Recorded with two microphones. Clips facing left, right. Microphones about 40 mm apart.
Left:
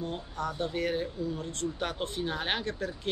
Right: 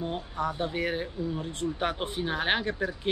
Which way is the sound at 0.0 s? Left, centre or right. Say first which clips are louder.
Right 3 dB; centre.